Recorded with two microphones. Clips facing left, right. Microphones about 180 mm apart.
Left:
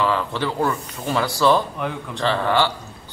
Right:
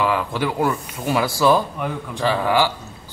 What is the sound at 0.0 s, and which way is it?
Speech, 10° right (ahead or behind).